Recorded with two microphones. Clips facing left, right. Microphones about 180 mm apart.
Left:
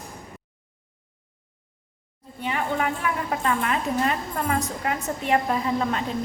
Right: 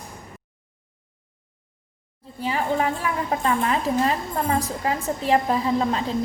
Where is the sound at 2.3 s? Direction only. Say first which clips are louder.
Right 3 dB; 30° right (ahead or behind).